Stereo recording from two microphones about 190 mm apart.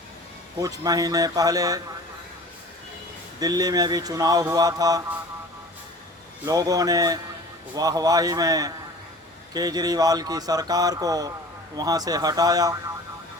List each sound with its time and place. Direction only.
0.6 s speech: 20° right (ahead or behind)
3.4 s speech: 20° right (ahead or behind)
6.4 s speech: 20° right (ahead or behind)